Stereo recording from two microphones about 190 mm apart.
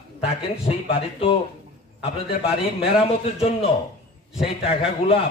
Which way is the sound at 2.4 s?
30° left (ahead or behind).